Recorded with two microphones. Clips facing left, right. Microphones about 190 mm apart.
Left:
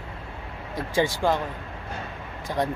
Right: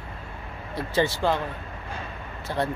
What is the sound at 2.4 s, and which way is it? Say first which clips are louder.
Speech: left 1 dB; 15° left (ahead or behind).